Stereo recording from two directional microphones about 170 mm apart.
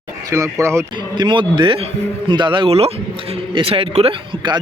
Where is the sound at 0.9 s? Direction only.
25° right (ahead or behind).